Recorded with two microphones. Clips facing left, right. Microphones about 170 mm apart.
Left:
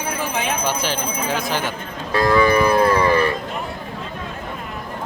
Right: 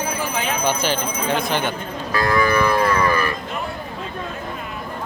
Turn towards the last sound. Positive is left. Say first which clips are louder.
# left 3 dB
turn(degrees=25)  # may be behind; listen again after turning